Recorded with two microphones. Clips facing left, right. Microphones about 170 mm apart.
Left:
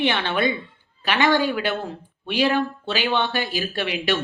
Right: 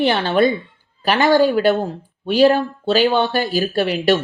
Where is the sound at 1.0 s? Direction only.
40° right (ahead or behind).